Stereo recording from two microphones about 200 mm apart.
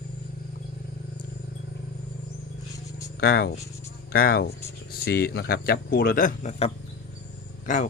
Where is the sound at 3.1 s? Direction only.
50° left (ahead or behind).